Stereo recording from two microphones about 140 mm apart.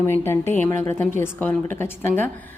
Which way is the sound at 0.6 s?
20° left (ahead or behind).